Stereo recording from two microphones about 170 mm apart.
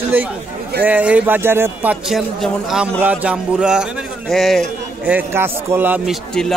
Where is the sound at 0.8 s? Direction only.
10° right (ahead or behind).